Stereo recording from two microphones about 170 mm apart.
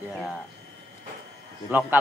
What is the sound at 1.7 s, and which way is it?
Speech, 10° right (ahead or behind).